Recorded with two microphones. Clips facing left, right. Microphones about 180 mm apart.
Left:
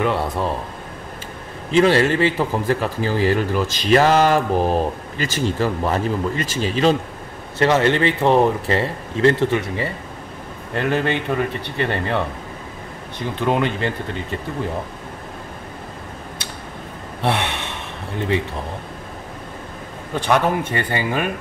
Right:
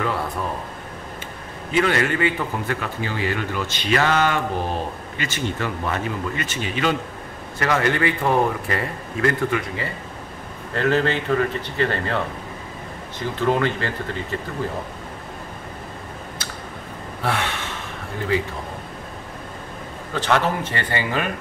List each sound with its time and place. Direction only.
0.0 s speech: 25° left (ahead or behind)
1.8 s speech: 30° left (ahead or behind)
10.7 s speech: 15° left (ahead or behind)
13.5 s speech: 20° left (ahead or behind)
17.2 s gasp: 20° left (ahead or behind)
20.2 s speech: 15° left (ahead or behind)